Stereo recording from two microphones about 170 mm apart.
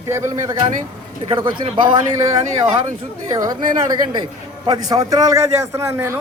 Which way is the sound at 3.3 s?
20° right (ahead or behind).